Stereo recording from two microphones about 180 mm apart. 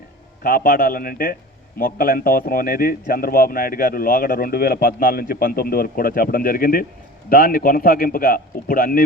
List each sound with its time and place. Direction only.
0.4 s speech: 55° left (ahead or behind)